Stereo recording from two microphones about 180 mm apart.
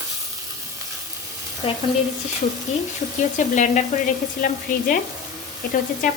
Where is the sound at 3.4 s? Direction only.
40° left (ahead or behind).